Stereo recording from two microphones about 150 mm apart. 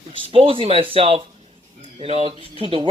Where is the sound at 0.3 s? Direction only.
35° right (ahead or behind).